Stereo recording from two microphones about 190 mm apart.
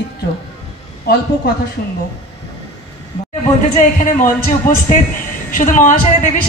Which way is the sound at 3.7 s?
45° left (ahead or behind).